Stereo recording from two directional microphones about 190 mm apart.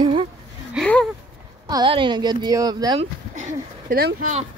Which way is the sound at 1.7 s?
25° right (ahead or behind).